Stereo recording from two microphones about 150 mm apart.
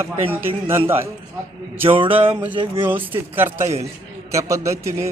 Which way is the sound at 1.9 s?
35° right (ahead or behind).